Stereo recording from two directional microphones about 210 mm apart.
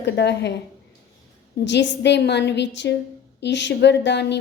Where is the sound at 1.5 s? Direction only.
55° left (ahead or behind).